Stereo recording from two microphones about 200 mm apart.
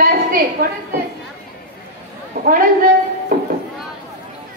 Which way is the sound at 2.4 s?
50° right (ahead or behind).